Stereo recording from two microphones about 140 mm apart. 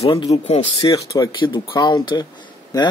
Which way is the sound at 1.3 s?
35° left (ahead or behind).